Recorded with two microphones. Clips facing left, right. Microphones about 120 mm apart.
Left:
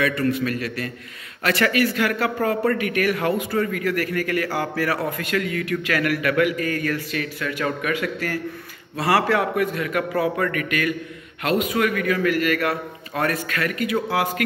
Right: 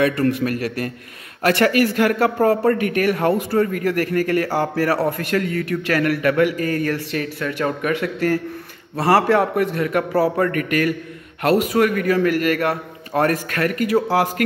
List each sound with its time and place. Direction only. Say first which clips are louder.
0.0 s a man's voice: right 4 dB; 45° right (ahead or behind)